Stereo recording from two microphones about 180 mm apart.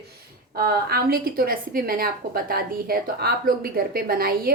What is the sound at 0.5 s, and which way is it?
A woman's voice, 60° right (ahead or behind).